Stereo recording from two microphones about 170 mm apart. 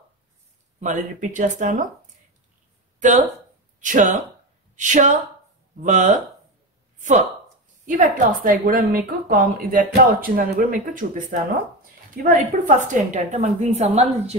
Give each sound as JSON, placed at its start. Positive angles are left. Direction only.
{"t": 0.7, "sound": "a woman's voice", "side_deg": -45}
{"t": 3.0, "sound": "a woman's voice", "side_deg": -45}